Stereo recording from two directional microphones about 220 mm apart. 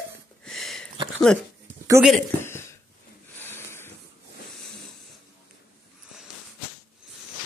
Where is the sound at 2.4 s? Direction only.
10° left (ahead or behind).